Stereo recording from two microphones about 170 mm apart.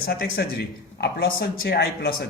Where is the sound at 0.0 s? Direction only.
60° left (ahead or behind).